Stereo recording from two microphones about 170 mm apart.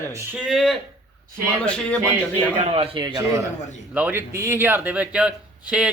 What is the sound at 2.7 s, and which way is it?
Speech, 35° right (ahead or behind).